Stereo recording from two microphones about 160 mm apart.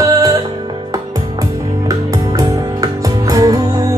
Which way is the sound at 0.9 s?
20° right (ahead or behind).